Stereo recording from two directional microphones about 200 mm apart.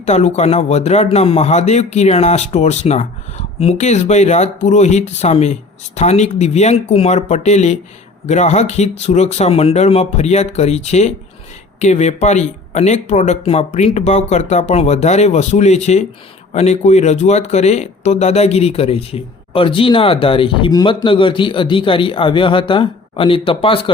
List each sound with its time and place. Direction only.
0.0 s speech: 35° left (ahead or behind)